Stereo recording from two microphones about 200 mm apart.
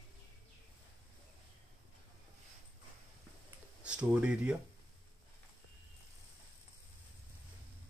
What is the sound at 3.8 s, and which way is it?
Speech, 5° right (ahead or behind).